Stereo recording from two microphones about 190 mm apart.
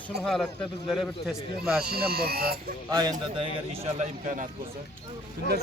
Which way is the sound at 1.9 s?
55° right (ahead or behind).